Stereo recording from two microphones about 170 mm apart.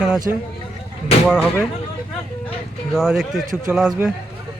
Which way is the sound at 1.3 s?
5° right (ahead or behind).